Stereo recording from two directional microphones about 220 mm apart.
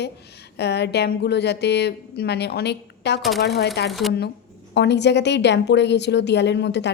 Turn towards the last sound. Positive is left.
turn(degrees=50)  # may be behind; listen again after turning